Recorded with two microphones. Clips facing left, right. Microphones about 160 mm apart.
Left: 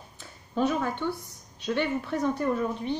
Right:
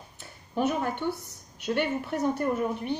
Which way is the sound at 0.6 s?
20° right (ahead or behind).